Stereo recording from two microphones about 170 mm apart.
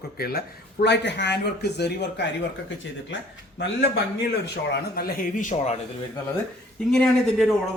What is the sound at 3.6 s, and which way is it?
Speech, 75° left (ahead or behind).